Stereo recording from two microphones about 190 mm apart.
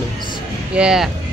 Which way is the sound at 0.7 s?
5° right (ahead or behind).